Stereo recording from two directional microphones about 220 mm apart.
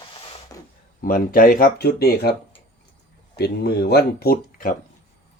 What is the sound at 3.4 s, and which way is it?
Speech, 45° left (ahead or behind).